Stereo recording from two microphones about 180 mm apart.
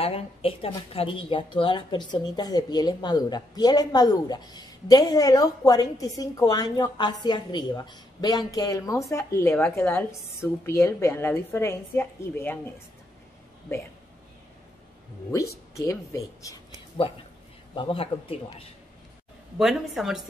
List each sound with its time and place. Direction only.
0.0 s a woman's voice: 30° left (ahead or behind); by 12.8 s 15° left (ahead or behind)
15.7 s a woman's voice: 15° left (ahead or behind)
17.7 s speech: 30° left (ahead or behind)
19.6 s a woman's voice: centre (ahead or behind)